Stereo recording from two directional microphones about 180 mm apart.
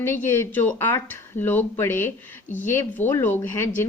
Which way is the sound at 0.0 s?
10° left (ahead or behind).